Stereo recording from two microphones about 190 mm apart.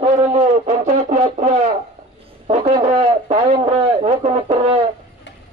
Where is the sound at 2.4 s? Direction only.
35° right (ahead or behind).